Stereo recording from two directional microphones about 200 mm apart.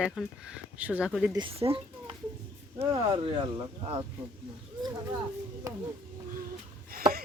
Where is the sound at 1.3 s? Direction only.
25° right (ahead or behind).